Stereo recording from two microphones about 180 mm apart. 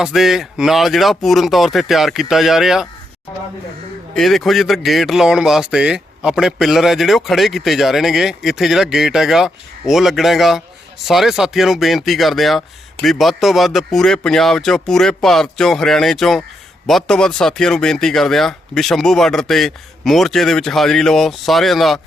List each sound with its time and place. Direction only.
0.0 s a man's voice: centre (ahead or behind)
4.1 s a man's voice: centre (ahead or behind)